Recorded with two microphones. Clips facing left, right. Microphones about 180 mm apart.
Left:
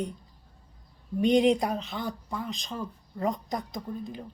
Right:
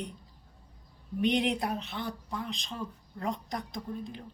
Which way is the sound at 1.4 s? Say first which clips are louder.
Left 7 dB; centre (ahead or behind).